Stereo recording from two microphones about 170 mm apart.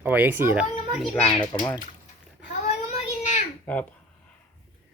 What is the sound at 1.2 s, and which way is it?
Speech, 25° left (ahead or behind).